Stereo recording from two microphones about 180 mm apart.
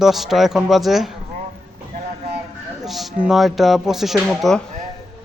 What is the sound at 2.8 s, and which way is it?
A man's voice, centre (ahead or behind).